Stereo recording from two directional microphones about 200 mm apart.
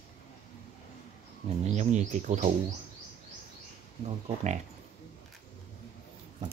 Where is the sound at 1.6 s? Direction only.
35° right (ahead or behind).